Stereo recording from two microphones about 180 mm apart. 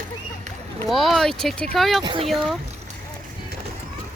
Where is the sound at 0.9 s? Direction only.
Centre (ahead or behind).